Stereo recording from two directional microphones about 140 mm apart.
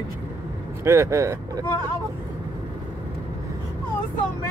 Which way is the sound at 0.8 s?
20° right (ahead or behind).